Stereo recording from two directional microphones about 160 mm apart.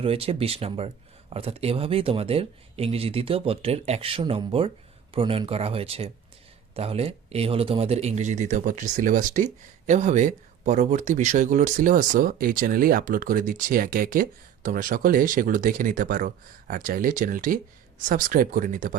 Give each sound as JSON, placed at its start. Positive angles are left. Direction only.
{"t": 0.0, "sound": "speech", "side_deg": -35}